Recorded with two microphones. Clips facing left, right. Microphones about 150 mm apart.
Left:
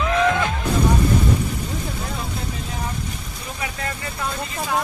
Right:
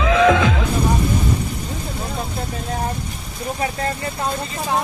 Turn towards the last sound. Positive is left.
turn(degrees=-35)  # may be behind; listen again after turning